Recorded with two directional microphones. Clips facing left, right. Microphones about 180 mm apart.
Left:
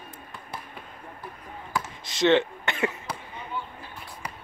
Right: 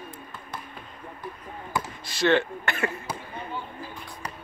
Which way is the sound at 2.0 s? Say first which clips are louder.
Left 2 dB; 20° left (ahead or behind).